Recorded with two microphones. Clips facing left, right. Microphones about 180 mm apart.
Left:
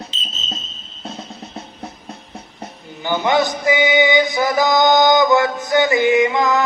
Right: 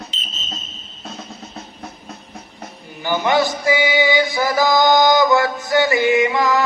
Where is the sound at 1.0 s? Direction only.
25° left (ahead or behind).